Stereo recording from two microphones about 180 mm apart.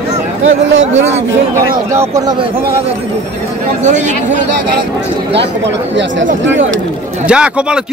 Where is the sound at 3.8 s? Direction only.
40° right (ahead or behind).